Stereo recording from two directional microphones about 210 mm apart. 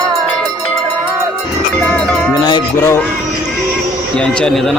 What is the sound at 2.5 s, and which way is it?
Music, 15° left (ahead or behind).